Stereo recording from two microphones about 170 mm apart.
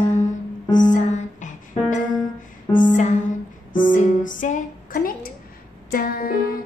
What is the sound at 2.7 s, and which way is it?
Music, 25° left (ahead or behind).